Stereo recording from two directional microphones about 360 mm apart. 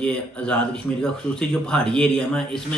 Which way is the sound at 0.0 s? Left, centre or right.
Centre.